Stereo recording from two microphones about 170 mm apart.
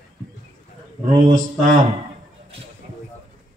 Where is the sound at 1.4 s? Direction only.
50° right (ahead or behind).